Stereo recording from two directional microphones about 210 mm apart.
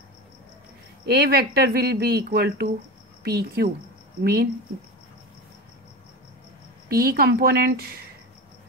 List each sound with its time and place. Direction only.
1.0 s speech: 50° right (ahead or behind)
6.9 s speech: 45° right (ahead or behind)